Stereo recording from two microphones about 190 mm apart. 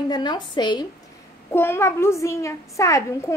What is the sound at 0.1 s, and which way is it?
A woman's voice, 20° left (ahead or behind).